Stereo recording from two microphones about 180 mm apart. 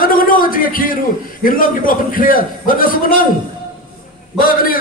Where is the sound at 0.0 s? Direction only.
50° left (ahead or behind).